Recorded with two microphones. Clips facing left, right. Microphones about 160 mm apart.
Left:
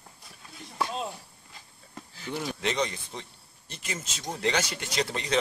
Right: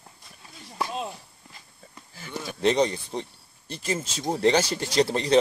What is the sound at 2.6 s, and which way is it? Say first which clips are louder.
Speech: right 11 dB; 35° right (ahead or behind).